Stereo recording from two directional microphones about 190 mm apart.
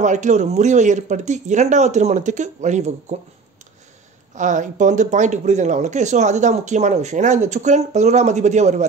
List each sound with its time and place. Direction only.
0.0 s speech: 40° right (ahead or behind)
4.4 s speech: 40° right (ahead or behind)